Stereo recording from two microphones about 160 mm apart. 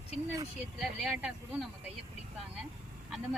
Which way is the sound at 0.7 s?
5° right (ahead or behind).